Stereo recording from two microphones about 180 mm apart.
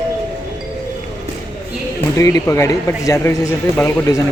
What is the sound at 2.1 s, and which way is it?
Speech, 15° left (ahead or behind).